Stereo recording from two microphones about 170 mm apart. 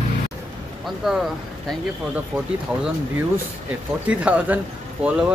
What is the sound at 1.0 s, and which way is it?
Speech, 5° right (ahead or behind).